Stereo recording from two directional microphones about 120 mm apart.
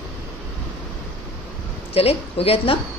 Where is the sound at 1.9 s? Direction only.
55° left (ahead or behind).